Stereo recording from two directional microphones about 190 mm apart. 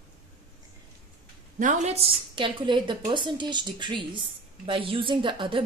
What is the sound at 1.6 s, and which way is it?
A woman's voice, 40° right (ahead or behind).